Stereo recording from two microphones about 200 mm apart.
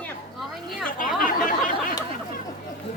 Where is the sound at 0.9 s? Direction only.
45° left (ahead or behind).